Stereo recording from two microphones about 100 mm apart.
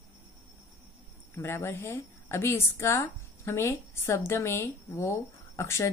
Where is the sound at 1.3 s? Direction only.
25° left (ahead or behind).